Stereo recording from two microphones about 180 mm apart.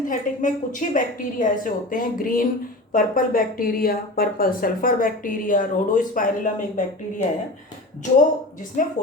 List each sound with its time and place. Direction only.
0.1 s speech: 45° left (ahead or behind)
8.8 s speech: 50° left (ahead or behind)